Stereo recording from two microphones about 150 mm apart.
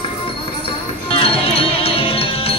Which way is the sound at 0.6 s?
40° left (ahead or behind).